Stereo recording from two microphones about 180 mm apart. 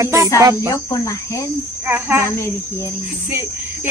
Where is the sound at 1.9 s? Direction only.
10° right (ahead or behind).